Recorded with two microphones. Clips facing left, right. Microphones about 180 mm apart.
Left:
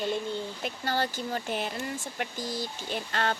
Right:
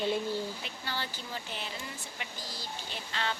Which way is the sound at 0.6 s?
45° left (ahead or behind).